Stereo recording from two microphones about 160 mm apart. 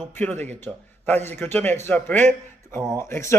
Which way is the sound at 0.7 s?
5° left (ahead or behind).